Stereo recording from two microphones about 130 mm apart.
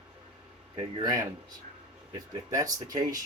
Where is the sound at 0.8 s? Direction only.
30° right (ahead or behind).